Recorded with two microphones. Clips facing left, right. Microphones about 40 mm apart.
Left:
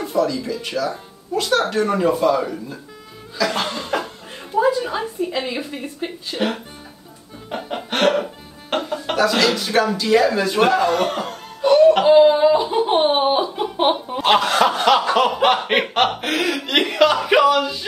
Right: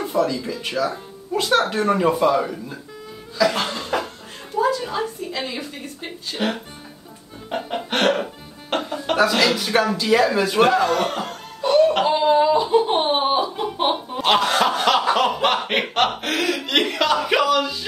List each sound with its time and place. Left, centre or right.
0.1 s speech: centre
3.3 s cough: centre
4.6 s a woman's voice: centre
6.3 s speech: centre
7.4 s music: centre
9.3 s a sound: centre
14.1 s snicker: centre